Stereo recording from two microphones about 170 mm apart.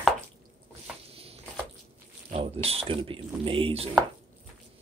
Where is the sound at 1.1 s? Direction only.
35° right (ahead or behind).